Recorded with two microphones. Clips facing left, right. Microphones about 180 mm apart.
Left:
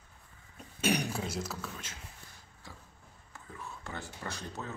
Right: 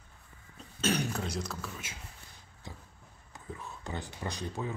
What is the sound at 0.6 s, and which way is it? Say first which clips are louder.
Speech: even; 15° left (ahead or behind).